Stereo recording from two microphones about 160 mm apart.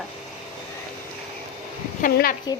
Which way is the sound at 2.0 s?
65° left (ahead or behind).